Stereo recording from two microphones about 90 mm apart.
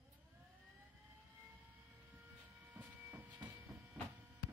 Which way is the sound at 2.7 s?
20° right (ahead or behind).